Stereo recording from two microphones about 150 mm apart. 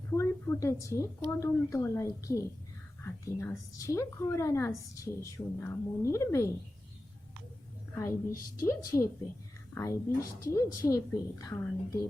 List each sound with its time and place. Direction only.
0.1 s a woman's voice: 15° left (ahead or behind)
8.6 s a woman's voice: 20° left (ahead or behind)